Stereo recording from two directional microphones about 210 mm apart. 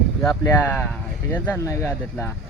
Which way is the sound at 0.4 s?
10° left (ahead or behind).